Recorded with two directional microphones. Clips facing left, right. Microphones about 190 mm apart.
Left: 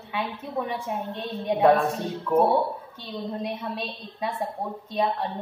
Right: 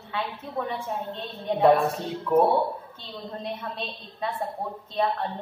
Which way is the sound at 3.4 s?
10° left (ahead or behind).